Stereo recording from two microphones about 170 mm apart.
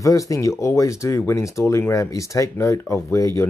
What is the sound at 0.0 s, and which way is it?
Speech, 20° left (ahead or behind).